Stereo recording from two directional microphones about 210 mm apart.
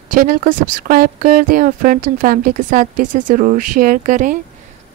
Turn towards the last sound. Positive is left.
turn(degrees=-40)  # may be behind; listen again after turning